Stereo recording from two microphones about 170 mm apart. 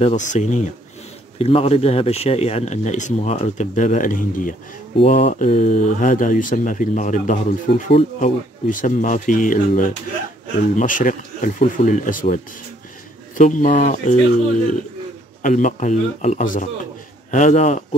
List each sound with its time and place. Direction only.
0.0 s speech: 45° left (ahead or behind)
1.4 s speech: 35° left (ahead or behind); by 4.6 s 50° left (ahead or behind)
4.9 s speech: 35° left (ahead or behind)
13.4 s speech: 50° left (ahead or behind)
15.4 s speech: 45° left (ahead or behind)